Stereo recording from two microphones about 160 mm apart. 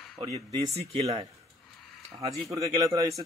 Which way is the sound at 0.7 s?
40° right (ahead or behind).